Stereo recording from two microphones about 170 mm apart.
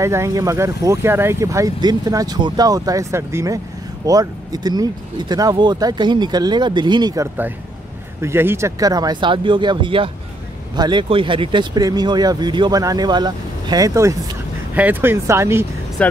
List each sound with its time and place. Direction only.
0.0 s speech: 15° right (ahead or behind)
16.0 s speech: 5° left (ahead or behind)